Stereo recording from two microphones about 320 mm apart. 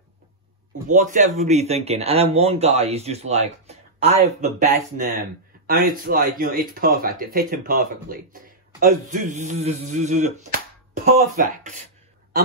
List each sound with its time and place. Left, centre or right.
0.8 s speech: right